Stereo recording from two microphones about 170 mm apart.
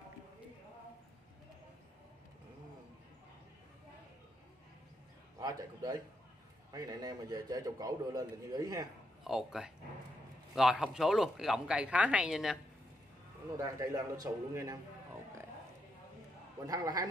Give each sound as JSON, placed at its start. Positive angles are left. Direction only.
{"t": 5.4, "sound": "a man's voice", "side_deg": -25}
{"t": 9.2, "sound": "speech", "side_deg": 0}
{"t": 13.6, "sound": "a man's voice", "side_deg": -20}
{"t": 16.6, "sound": "a man's voice", "side_deg": -20}